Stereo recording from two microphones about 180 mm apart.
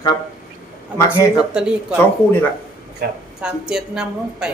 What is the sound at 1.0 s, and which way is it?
Speech, 5° right (ahead or behind).